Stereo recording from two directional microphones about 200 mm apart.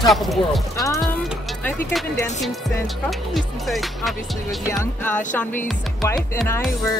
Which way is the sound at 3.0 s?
Centre (ahead or behind).